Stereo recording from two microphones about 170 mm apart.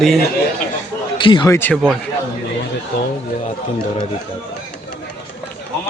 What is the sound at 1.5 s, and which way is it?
Speech, 15° left (ahead or behind).